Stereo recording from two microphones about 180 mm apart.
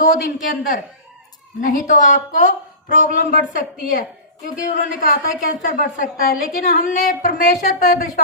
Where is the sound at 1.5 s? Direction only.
45° left (ahead or behind).